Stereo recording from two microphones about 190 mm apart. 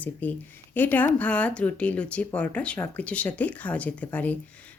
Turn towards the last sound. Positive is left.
turn(degrees=10)  # may be behind; listen again after turning